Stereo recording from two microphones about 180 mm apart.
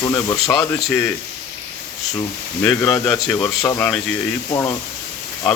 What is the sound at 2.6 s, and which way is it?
Speech, 10° left (ahead or behind).